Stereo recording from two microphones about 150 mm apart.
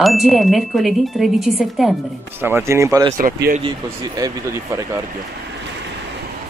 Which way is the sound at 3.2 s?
75° right (ahead or behind).